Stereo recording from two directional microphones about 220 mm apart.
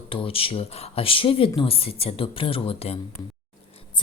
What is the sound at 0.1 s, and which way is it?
Speech, 25° left (ahead or behind).